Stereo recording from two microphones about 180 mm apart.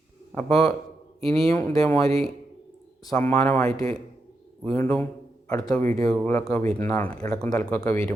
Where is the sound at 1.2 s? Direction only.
5° left (ahead or behind).